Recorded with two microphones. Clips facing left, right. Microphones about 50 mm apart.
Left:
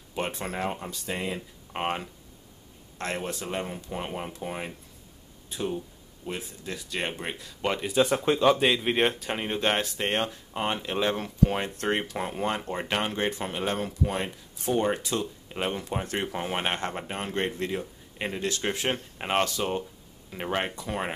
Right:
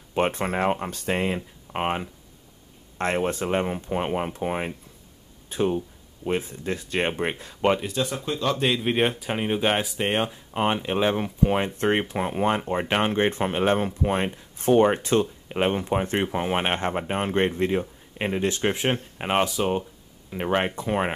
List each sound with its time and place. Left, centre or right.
0.1 s speech: right
1.7 s speech: centre
3.0 s speech: right
8.0 s speech: left
8.5 s speech: centre; by 21.1 s right